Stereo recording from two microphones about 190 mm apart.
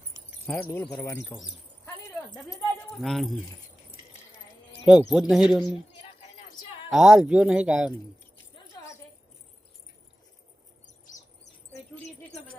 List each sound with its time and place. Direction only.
0.4 s speech: 10° left (ahead or behind)
1.8 s a sound: 10° left (ahead or behind)
2.4 s speech: centre (ahead or behind)
4.9 s speech: 5° right (ahead or behind)
5.9 s a sound: 30° left (ahead or behind)
6.9 s speech: 5° right (ahead or behind)